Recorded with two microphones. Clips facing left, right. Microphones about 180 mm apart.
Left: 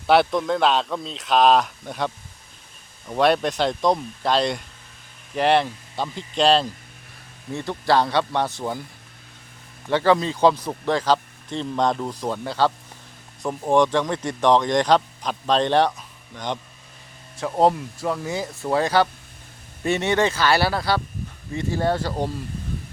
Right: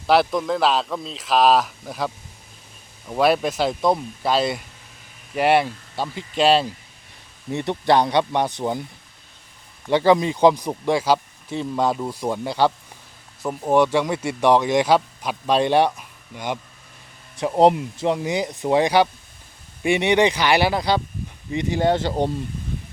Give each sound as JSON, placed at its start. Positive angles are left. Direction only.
{"t": 0.1, "sound": "a man's voice", "side_deg": 0}
{"t": 7.5, "sound": "speech", "side_deg": -20}
{"t": 9.9, "sound": "speech", "side_deg": -15}